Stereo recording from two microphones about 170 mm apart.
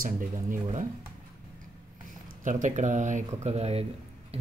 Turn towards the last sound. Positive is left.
turn(degrees=-35)  # may be behind; listen again after turning